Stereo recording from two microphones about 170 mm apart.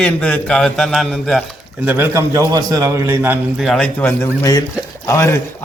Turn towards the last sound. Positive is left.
turn(degrees=20)  # may be behind; listen again after turning